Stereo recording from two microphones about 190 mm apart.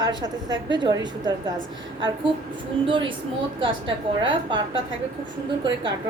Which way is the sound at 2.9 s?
25° right (ahead or behind).